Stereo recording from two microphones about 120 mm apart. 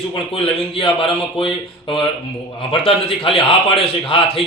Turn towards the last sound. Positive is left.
turn(degrees=50)  # may be behind; listen again after turning